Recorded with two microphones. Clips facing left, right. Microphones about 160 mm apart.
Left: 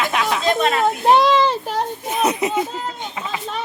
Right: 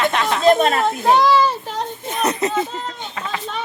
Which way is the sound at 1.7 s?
5° left (ahead or behind).